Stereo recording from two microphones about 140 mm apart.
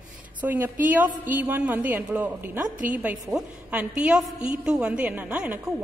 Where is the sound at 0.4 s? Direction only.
10° right (ahead or behind).